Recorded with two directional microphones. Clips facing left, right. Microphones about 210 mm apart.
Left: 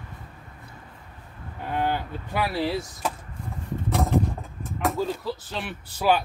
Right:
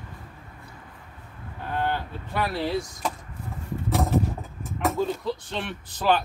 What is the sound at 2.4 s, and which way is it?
Speech, 5° left (ahead or behind).